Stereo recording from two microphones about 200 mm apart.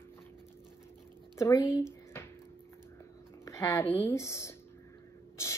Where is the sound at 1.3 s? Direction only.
15° left (ahead or behind).